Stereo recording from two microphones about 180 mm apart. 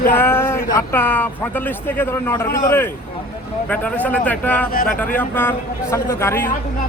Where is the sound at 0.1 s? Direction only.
10° left (ahead or behind).